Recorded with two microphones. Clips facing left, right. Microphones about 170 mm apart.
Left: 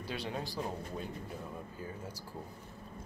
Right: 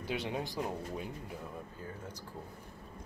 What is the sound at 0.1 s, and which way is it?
Speech, 20° right (ahead or behind).